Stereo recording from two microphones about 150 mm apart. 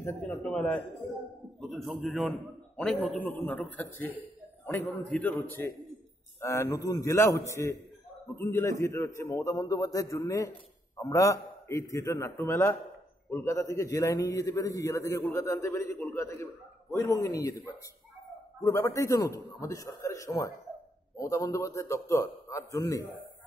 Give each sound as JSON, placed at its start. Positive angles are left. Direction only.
{"t": 0.0, "sound": "a man's voice", "side_deg": 10}
{"t": 18.6, "sound": "a man's voice", "side_deg": 20}